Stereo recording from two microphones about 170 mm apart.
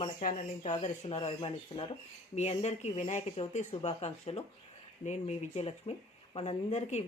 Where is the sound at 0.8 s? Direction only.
40° left (ahead or behind).